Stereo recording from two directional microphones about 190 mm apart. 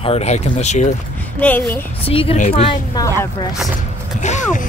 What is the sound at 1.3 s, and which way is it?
Speech, 10° left (ahead or behind).